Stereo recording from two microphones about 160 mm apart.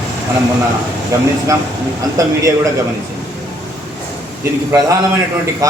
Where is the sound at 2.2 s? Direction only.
20° right (ahead or behind).